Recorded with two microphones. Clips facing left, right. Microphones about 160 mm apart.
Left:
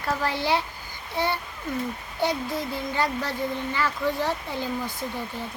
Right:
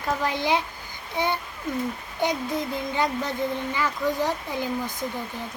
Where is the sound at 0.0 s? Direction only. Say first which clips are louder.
Right 1 dB; 15° right (ahead or behind).